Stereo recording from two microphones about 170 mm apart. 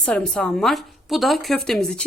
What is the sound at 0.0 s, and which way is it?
A woman's voice, 5° left (ahead or behind).